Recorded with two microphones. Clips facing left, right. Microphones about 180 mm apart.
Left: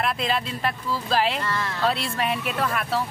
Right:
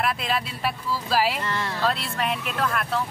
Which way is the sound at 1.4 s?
20° right (ahead or behind).